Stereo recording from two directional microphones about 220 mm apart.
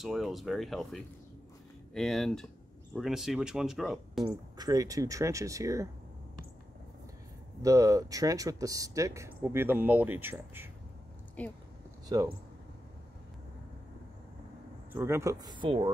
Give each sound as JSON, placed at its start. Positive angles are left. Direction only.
{"t": 0.0, "sound": "speech", "side_deg": 0}
{"t": 4.6, "sound": "speech", "side_deg": -15}
{"t": 7.6, "sound": "speech", "side_deg": -15}
{"t": 11.4, "sound": "speech", "side_deg": 5}
{"t": 12.1, "sound": "speech", "side_deg": -15}
{"t": 14.9, "sound": "speech", "side_deg": -10}